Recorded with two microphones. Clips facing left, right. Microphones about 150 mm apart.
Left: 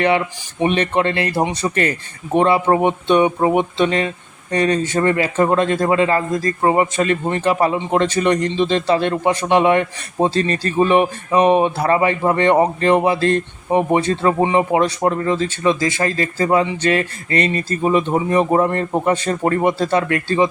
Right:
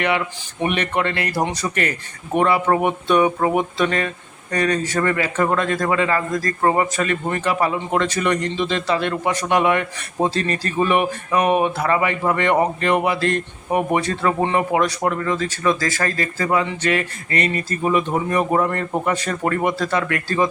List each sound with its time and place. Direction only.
0.6 s a man's voice: 30° left (ahead or behind)
14.8 s a man's voice: 30° left (ahead or behind)